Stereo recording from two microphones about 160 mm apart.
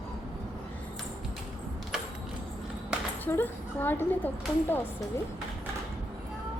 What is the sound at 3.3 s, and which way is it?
Speech, 10° left (ahead or behind).